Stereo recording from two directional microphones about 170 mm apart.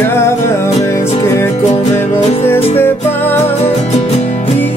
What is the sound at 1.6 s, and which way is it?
Music, 40° left (ahead or behind).